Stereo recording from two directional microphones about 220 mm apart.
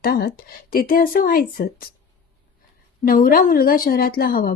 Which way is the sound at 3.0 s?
40° left (ahead or behind).